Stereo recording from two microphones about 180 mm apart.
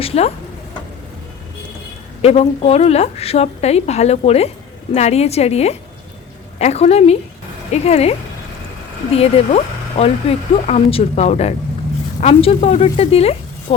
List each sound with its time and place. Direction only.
0.0 s speech: 35° left (ahead or behind)
2.2 s speech: 35° left (ahead or behind)
9.1 s speech: 35° left (ahead or behind)